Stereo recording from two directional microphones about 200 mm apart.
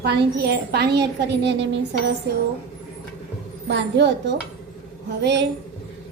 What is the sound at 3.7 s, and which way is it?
A woman's voice, 60° right (ahead or behind).